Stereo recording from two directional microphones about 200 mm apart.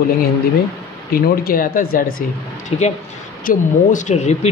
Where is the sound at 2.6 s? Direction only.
35° left (ahead or behind).